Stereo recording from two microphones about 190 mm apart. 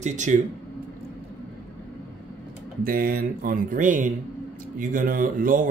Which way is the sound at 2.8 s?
50° right (ahead or behind).